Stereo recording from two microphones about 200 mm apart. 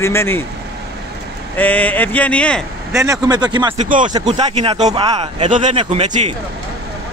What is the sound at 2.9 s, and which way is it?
Speech, 15° right (ahead or behind).